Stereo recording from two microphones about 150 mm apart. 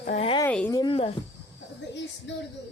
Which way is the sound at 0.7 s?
25° left (ahead or behind).